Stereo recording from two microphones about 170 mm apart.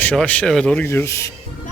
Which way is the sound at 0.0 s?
10° left (ahead or behind).